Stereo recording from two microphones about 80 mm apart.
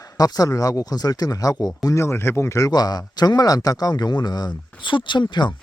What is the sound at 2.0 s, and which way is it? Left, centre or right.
Speech, left.